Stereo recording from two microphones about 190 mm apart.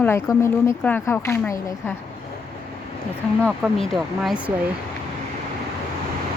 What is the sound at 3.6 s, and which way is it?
Speech, centre (ahead or behind).